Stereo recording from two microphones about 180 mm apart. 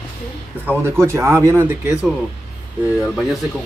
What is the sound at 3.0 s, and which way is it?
Speech, centre (ahead or behind).